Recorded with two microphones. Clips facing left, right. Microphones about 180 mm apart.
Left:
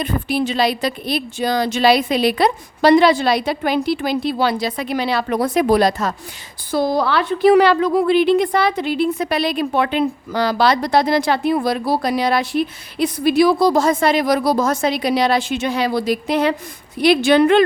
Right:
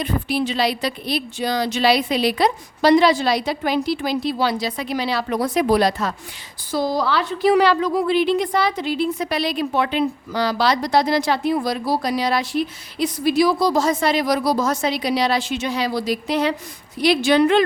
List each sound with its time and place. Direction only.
0.0 s a woman's voice: 50° left (ahead or behind)
6.7 s a woman's voice: 60° left (ahead or behind)